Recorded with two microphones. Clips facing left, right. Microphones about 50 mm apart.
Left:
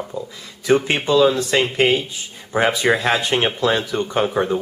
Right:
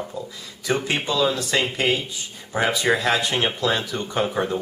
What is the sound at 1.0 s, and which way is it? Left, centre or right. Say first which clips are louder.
Speech: left 7 dB; centre.